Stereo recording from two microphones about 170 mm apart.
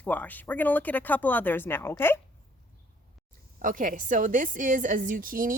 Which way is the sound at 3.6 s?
50° right (ahead or behind).